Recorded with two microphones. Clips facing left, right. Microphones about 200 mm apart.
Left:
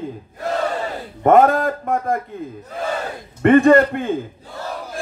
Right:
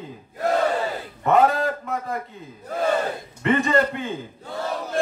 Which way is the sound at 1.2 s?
50° left (ahead or behind).